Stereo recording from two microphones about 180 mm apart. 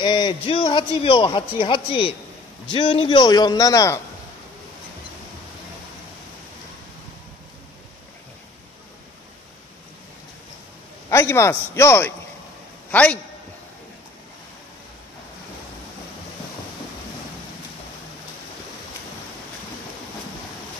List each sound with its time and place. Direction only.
0.0 s a man's voice: 25° left (ahead or behind)
11.1 s a man's voice: 15° left (ahead or behind)